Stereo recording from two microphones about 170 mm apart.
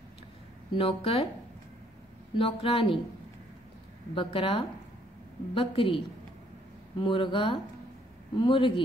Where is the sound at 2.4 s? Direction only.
35° left (ahead or behind).